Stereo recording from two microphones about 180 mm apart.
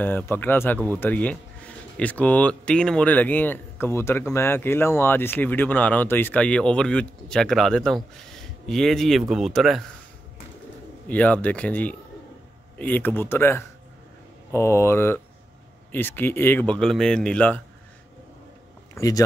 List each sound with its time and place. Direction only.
0.0 s a man's voice: 10° left (ahead or behind)
11.1 s a man's voice: 10° left (ahead or behind)
18.9 s speech: 20° left (ahead or behind)